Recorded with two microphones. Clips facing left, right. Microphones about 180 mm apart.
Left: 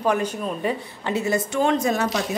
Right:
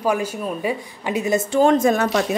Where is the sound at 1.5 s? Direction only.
40° right (ahead or behind).